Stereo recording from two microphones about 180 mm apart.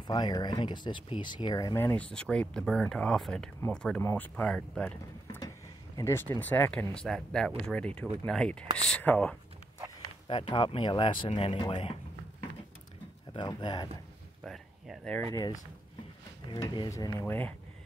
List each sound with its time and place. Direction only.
0.0 s speech: 25° left (ahead or behind); by 9.4 s 5° left (ahead or behind)
10.2 s speech: 30° left (ahead or behind)
13.3 s speech: 25° left (ahead or behind)
14.4 s speech: centre (ahead or behind)
16.4 s speech: 25° left (ahead or behind)